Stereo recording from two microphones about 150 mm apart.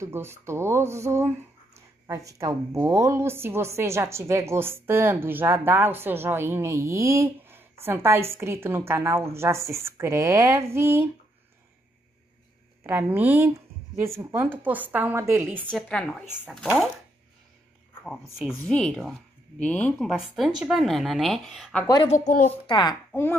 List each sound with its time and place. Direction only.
0.0 s a woman's voice: 15° right (ahead or behind)
12.8 s a woman's voice: 10° right (ahead or behind)
15.7 s speech: 5° left (ahead or behind)
16.4 s speech: 5° right (ahead or behind)
18.6 s speech: 5° left (ahead or behind)
22.0 s a woman's voice: 50° left (ahead or behind)
22.7 s a child's voice: 30° left (ahead or behind)